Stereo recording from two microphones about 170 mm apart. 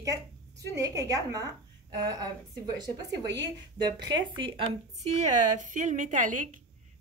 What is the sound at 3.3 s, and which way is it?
A woman's voice, 25° right (ahead or behind).